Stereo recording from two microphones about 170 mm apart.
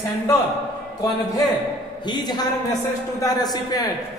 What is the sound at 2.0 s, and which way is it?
A woman's voice, 25° left (ahead or behind).